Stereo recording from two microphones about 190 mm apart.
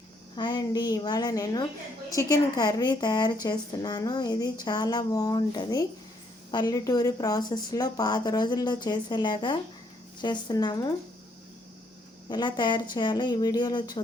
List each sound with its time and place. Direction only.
0.3 s speech: 20° left (ahead or behind)
12.3 s speech: 25° left (ahead or behind)